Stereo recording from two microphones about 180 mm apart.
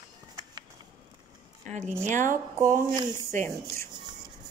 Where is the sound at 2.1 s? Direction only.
45° right (ahead or behind).